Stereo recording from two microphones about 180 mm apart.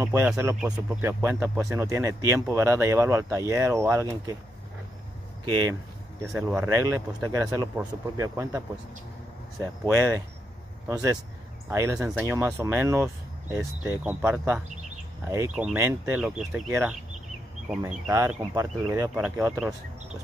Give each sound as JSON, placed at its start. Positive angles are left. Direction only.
{"t": 0.0, "sound": "speech", "side_deg": -15}
{"t": 0.6, "sound": "speech", "side_deg": -5}
{"t": 5.4, "sound": "speech", "side_deg": -25}
{"t": 6.2, "sound": "speech", "side_deg": -5}
{"t": 6.7, "sound": "speech", "side_deg": -15}
{"t": 15.5, "sound": "speech", "side_deg": -5}
{"t": 18.1, "sound": "speech", "side_deg": -20}